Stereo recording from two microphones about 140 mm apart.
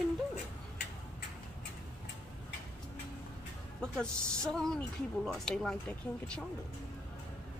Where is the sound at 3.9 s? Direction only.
5° left (ahead or behind).